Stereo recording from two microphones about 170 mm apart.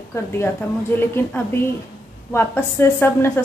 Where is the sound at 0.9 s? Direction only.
15° left (ahead or behind).